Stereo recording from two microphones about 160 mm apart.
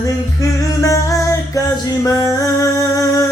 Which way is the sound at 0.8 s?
20° left (ahead or behind).